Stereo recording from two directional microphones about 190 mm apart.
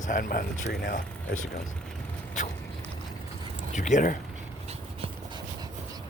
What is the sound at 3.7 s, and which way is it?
Speech, 40° left (ahead or behind).